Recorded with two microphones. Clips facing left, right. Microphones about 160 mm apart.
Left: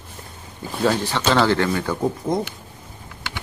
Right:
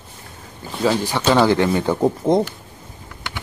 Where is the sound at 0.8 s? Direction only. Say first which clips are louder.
Right 2 dB; 10° right (ahead or behind).